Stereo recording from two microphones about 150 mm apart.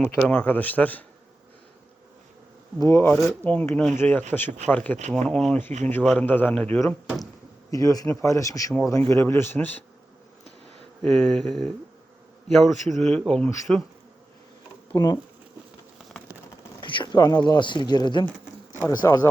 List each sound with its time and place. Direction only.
0.0 s speech: 10° left (ahead or behind)
2.7 s speech: 20° left (ahead or behind)
7.7 s speech: 25° left (ahead or behind)
11.0 s speech: 5° left (ahead or behind)
14.9 s speech: 25° left (ahead or behind)
16.8 s speech: 35° left (ahead or behind)
18.7 s a sound: 20° left (ahead or behind)